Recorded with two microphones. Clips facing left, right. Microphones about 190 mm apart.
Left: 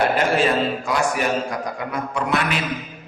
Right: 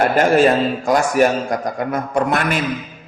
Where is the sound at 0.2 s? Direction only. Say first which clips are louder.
Right 6 dB; 45° right (ahead or behind).